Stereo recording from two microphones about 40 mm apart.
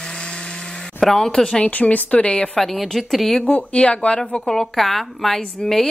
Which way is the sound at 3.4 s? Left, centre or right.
Left.